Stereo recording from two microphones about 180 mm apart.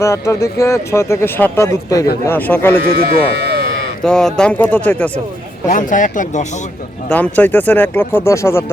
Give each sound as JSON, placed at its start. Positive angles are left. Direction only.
{"t": 0.0, "sound": "speech", "side_deg": 15}
{"t": 2.9, "sound": "speech", "side_deg": -65}
{"t": 4.0, "sound": "speech", "side_deg": 5}
{"t": 5.6, "sound": "speech", "side_deg": 45}
{"t": 7.1, "sound": "speech", "side_deg": 10}